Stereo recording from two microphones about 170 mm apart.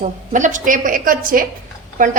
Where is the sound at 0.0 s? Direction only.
45° right (ahead or behind).